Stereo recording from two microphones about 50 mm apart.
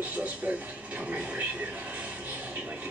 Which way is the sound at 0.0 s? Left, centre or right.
Right.